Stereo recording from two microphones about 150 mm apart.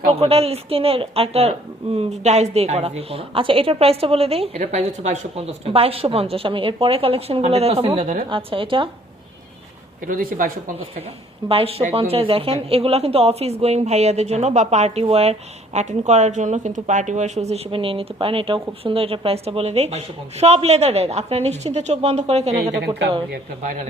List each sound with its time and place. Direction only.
0.1 s a woman's voice: 40° right (ahead or behind)
7.9 s a woman's voice: 55° right (ahead or behind)
8.3 s a woman's voice: 35° right (ahead or behind)
10.1 s speech: 65° right (ahead or behind)
11.4 s a woman's voice: 40° right (ahead or behind)